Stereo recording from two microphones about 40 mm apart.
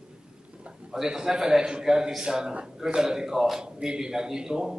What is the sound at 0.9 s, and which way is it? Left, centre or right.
A man's voice, centre.